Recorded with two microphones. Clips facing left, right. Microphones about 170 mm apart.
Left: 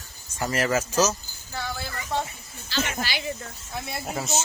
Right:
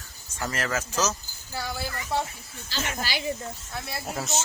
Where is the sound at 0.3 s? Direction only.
15° left (ahead or behind).